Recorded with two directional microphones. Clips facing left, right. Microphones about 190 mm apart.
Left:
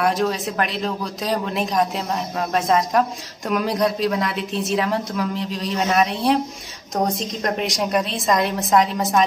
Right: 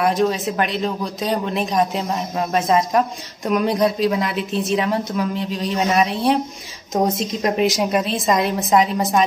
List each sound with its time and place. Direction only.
0.0 s speech: centre (ahead or behind)